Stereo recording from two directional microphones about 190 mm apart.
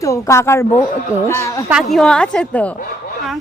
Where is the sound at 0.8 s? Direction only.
15° left (ahead or behind).